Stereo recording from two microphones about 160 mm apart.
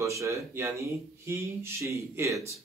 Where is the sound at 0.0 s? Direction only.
20° right (ahead or behind).